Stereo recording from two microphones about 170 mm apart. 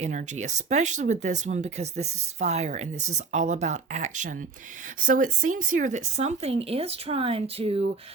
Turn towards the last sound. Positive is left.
turn(degrees=-35)  # may be behind; listen again after turning